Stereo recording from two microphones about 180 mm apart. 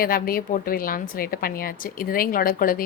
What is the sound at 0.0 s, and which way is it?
A woman's voice, 55° left (ahead or behind).